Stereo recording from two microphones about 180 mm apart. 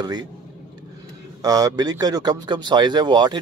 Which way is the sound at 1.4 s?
20° right (ahead or behind).